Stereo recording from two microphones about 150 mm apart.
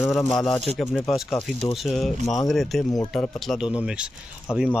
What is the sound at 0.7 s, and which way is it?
Speech, centre (ahead or behind).